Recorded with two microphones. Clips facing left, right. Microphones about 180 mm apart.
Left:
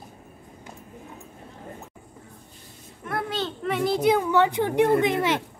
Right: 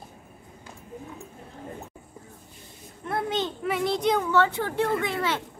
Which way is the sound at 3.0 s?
25° right (ahead or behind).